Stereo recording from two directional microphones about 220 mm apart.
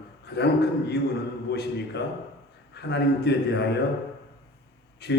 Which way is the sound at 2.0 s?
50° left (ahead or behind).